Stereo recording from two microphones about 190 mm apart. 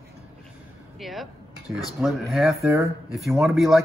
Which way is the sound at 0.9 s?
Centre (ahead or behind).